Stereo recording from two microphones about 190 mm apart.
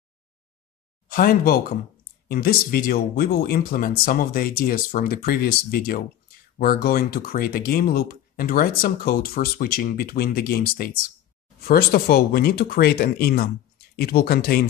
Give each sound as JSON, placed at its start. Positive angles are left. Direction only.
{"t": 1.0, "sound": "speech", "side_deg": 50}